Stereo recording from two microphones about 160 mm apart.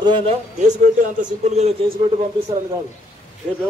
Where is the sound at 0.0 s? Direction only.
30° right (ahead or behind).